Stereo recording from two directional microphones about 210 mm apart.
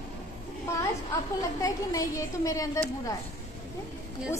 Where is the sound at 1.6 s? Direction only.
15° left (ahead or behind).